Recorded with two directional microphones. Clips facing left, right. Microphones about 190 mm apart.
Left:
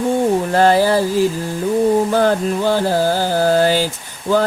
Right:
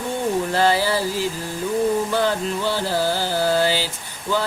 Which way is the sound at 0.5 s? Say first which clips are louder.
Left 7 dB; 50° left (ahead or behind).